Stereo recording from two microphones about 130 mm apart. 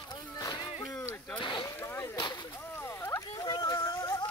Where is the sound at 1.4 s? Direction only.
40° left (ahead or behind).